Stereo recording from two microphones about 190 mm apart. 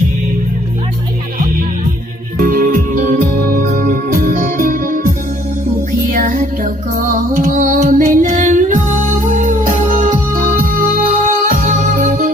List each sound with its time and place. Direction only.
2.4 s music: 45° right (ahead or behind)